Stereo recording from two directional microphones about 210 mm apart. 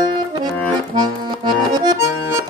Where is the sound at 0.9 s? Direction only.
20° right (ahead or behind).